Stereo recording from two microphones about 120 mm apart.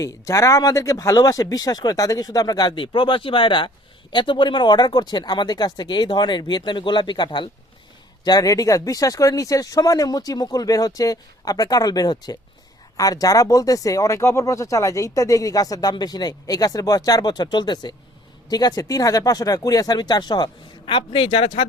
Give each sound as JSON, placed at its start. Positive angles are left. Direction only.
{"t": 0.0, "sound": "speech", "side_deg": 25}